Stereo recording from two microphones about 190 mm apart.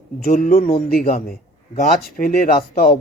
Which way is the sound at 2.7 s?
45° left (ahead or behind).